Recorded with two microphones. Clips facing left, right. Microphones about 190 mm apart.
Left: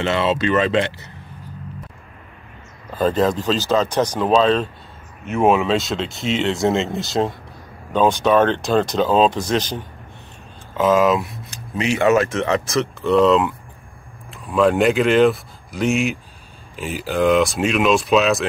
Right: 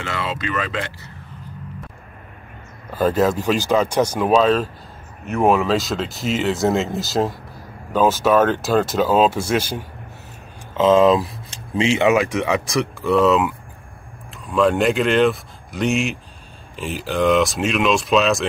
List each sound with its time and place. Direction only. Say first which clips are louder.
0.0 s speech: left 7 dB; 25° left (ahead or behind)
2.9 s speech: even; 10° right (ahead or behind)
10.8 s speech: right 2 dB; 25° right (ahead or behind)
12.1 s speech: left 1 dB; 15° right (ahead or behind)